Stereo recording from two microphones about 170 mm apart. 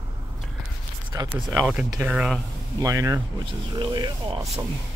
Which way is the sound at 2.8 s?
20° right (ahead or behind).